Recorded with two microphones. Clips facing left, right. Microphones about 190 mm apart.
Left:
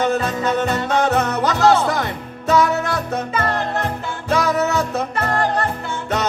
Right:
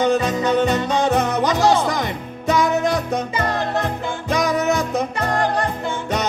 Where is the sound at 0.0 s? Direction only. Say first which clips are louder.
Right 1 dB; 15° right (ahead or behind).